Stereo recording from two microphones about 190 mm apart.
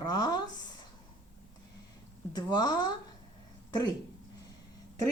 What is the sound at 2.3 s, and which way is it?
Speech, 20° left (ahead or behind).